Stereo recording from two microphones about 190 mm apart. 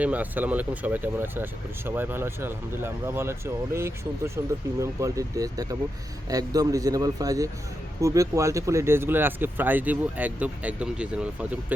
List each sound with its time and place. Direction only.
0.0 s a man's voice: 10° right (ahead or behind)